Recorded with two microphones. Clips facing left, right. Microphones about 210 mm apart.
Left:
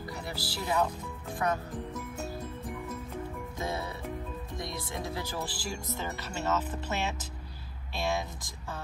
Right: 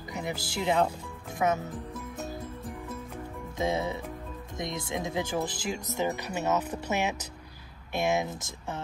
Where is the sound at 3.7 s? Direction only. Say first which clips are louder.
Right 5 dB; 20° right (ahead or behind).